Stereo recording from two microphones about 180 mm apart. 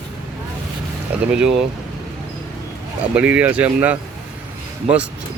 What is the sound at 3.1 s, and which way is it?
Speech, 5° right (ahead or behind).